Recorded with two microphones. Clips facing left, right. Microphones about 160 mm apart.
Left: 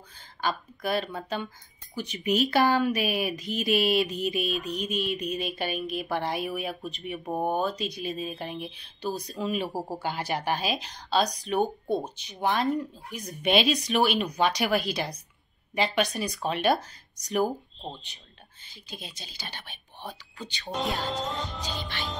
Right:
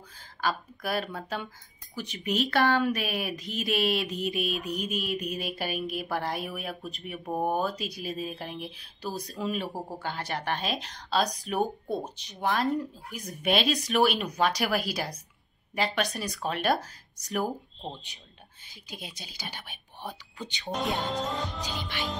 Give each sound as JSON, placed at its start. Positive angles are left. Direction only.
{"t": 0.2, "sound": "speech", "side_deg": 0}
{"t": 19.1, "sound": "speech", "side_deg": -10}
{"t": 21.1, "sound": "speech", "side_deg": 0}
{"t": 21.6, "sound": "speech", "side_deg": -15}